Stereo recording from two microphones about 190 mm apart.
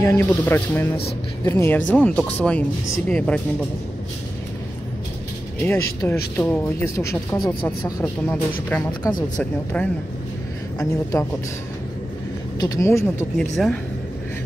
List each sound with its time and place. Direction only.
0.0 s a woman's voice: 10° left (ahead or behind)
5.7 s a woman's voice: 15° left (ahead or behind)
12.5 s speech: 20° left (ahead or behind)
13.4 s a woman's voice: 5° left (ahead or behind)